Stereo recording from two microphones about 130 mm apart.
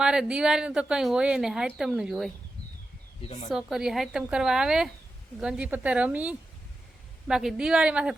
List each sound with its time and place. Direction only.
0.0 s a woman's voice: 5° right (ahead or behind)
3.2 s speech: 55° left (ahead or behind)
3.5 s a woman's voice: 5° right (ahead or behind)